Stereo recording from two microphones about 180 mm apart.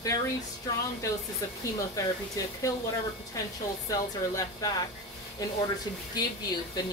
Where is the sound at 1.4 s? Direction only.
20° left (ahead or behind).